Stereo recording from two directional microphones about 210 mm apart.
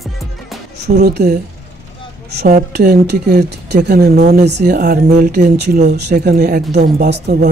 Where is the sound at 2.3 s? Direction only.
50° right (ahead or behind).